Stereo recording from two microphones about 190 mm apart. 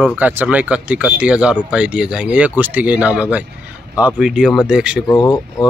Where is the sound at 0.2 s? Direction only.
10° right (ahead or behind).